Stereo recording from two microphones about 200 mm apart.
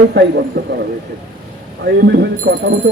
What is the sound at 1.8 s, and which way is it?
Speech, 55° right (ahead or behind).